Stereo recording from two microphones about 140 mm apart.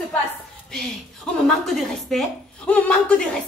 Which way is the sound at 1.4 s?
Centre (ahead or behind).